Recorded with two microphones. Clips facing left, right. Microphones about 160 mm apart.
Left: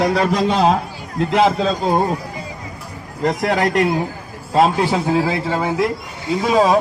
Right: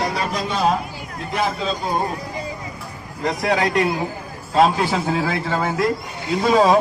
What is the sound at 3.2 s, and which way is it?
Speech, 50° left (ahead or behind).